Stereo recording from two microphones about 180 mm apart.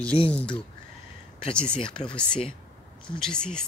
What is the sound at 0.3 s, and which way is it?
Speech, 5° left (ahead or behind).